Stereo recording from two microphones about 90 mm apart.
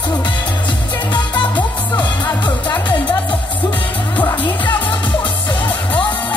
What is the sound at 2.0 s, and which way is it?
Music, 55° left (ahead or behind).